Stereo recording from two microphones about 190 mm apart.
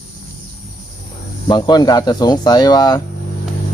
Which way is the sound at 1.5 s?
20° left (ahead or behind).